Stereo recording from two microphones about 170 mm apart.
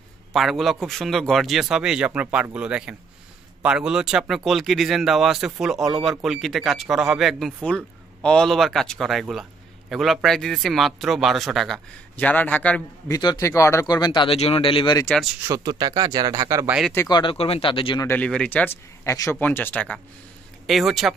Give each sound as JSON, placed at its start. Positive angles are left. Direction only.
{"t": 0.3, "sound": "speech", "side_deg": 0}
{"t": 13.1, "sound": "speech", "side_deg": 25}
{"t": 15.4, "sound": "speech", "side_deg": -20}
{"t": 16.9, "sound": "speech", "side_deg": 15}
{"t": 17.2, "sound": "speech", "side_deg": 35}
{"t": 18.0, "sound": "speech", "side_deg": 10}